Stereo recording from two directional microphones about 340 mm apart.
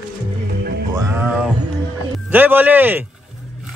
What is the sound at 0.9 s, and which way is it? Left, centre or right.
Music, centre.